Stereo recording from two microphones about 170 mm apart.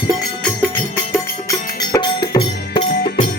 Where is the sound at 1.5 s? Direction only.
20° left (ahead or behind).